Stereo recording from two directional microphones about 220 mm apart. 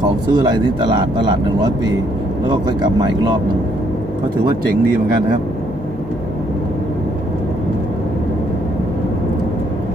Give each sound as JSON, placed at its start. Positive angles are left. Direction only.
{"t": 0.3, "sound": "speech", "side_deg": -20}